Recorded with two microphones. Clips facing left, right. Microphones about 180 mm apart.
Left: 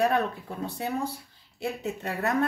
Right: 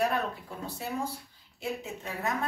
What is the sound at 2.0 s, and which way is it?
Speech, 65° left (ahead or behind).